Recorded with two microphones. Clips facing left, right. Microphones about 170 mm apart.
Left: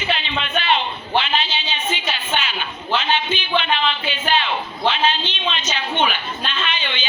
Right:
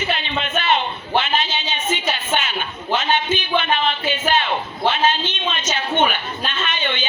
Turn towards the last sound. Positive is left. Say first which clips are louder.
# right 2 dB
turn(degrees=-45)  # may be behind; listen again after turning